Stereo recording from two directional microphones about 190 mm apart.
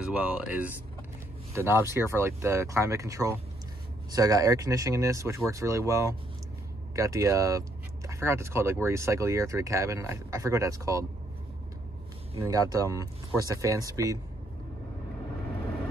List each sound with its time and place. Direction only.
0.0 s speech: 5° right (ahead or behind)
12.4 s speech: 15° right (ahead or behind)